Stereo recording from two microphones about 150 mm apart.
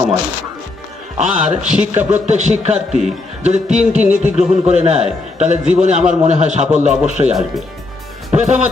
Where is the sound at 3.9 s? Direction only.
10° right (ahead or behind).